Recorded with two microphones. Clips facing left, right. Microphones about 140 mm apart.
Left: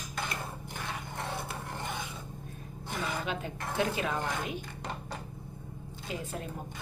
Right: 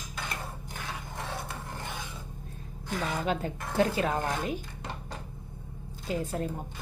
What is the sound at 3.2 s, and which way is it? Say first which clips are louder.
Speech: right 5 dB; 40° right (ahead or behind).